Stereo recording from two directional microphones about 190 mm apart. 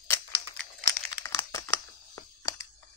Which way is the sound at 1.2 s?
15° left (ahead or behind).